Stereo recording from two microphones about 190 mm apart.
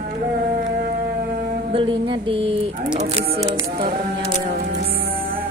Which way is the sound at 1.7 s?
25° right (ahead or behind).